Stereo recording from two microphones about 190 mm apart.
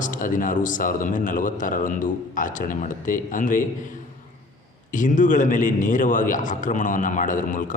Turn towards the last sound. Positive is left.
turn(degrees=45)  # may be behind; listen again after turning